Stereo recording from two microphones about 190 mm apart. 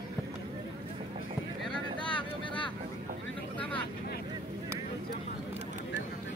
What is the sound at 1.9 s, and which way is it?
Vehicle, 25° left (ahead or behind).